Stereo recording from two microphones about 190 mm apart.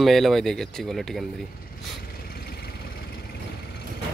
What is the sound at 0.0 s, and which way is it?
Speech, centre (ahead or behind).